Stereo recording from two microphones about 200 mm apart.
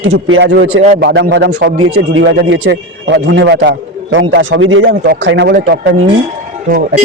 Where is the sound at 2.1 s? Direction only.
70° right (ahead or behind).